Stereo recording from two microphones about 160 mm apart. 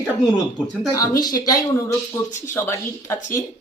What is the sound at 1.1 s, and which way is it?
Speech, 25° left (ahead or behind).